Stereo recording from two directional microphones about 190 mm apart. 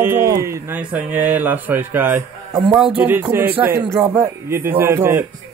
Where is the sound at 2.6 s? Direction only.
25° right (ahead or behind).